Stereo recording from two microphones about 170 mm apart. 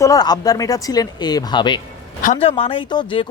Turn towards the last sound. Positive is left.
turn(degrees=30)  # may be behind; listen again after turning